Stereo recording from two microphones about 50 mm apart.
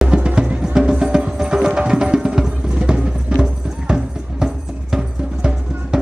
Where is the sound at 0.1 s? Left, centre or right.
Centre.